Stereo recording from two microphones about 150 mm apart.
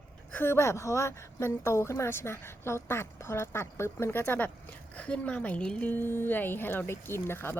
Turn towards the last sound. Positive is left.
turn(degrees=15)  # may be behind; listen again after turning